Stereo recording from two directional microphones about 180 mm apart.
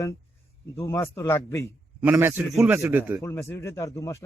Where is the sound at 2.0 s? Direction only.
10° right (ahead or behind).